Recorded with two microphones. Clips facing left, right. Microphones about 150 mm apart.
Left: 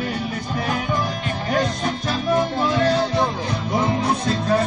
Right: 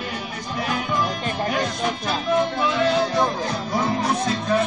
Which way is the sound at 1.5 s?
40° left (ahead or behind).